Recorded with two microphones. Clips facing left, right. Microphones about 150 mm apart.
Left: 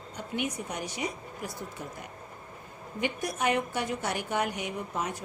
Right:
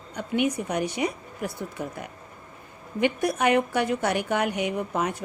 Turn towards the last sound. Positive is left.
turn(degrees=-70)  # may be behind; listen again after turning